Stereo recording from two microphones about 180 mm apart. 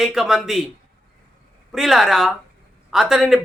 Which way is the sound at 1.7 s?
Centre (ahead or behind).